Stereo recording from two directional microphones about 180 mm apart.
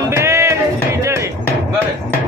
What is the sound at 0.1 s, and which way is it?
Music, 15° right (ahead or behind).